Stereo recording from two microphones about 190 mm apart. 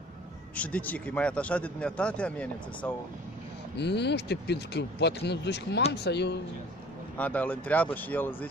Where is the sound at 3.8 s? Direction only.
60° left (ahead or behind).